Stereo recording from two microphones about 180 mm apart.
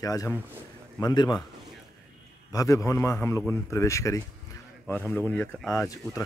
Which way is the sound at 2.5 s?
20° left (ahead or behind).